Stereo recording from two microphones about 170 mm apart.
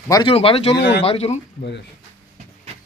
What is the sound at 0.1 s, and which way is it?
Speech, 25° left (ahead or behind).